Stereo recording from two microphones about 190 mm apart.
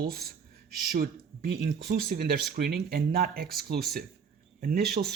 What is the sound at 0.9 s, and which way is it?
Speech, 55° right (ahead or behind).